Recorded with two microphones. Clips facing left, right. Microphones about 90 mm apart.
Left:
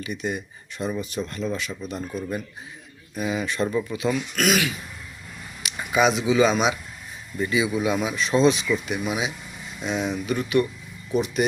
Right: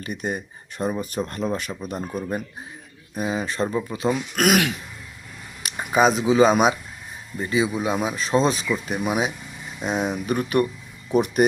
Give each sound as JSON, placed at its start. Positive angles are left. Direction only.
{"t": 0.0, "sound": "speech", "side_deg": -45}
{"t": 3.2, "sound": "speech", "side_deg": -35}
{"t": 4.4, "sound": "speech", "side_deg": -55}
{"t": 5.7, "sound": "speech", "side_deg": -40}
{"t": 7.3, "sound": "speech", "side_deg": -30}